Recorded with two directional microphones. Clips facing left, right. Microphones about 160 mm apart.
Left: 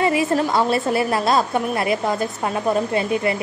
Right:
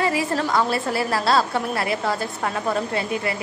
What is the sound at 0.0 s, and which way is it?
A woman's voice, 20° left (ahead or behind).